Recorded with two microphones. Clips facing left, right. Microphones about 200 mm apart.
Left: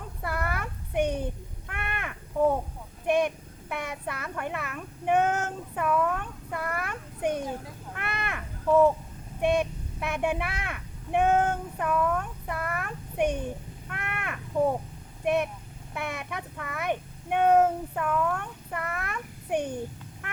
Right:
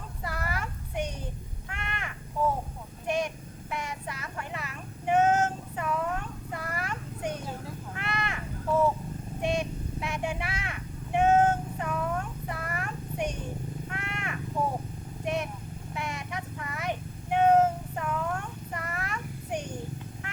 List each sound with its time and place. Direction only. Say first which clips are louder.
0.2 s a sound: left 3 dB; 55° left (ahead or behind)
1.6 s crow: left 3 dB; 55° left (ahead or behind)
3.1 s child singing: left 5 dB; 60° left (ahead or behind)
7.9 s crow: even; 55° left (ahead or behind)
9.4 s a sound: left 5 dB; 55° left (ahead or behind)
12.5 s child singing: left 2 dB; 55° left (ahead or behind)
13.9 s crow: left 4 dB; 60° left (ahead or behind)
15.2 s vehicle: left 5 dB; 60° left (ahead or behind)
16.0 s child singing: left 2 dB; 60° left (ahead or behind)